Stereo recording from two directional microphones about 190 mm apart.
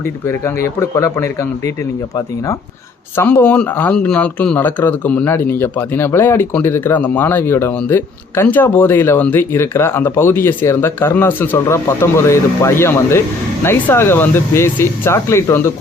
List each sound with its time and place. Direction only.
0.0 s a man's voice: 15° left (ahead or behind)